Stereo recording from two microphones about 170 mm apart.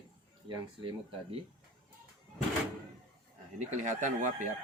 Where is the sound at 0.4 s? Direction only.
30° right (ahead or behind).